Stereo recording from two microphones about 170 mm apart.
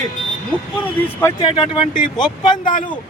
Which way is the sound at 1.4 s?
30° left (ahead or behind).